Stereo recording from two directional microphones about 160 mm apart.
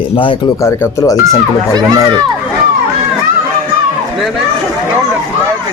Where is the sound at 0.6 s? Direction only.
15° left (ahead or behind).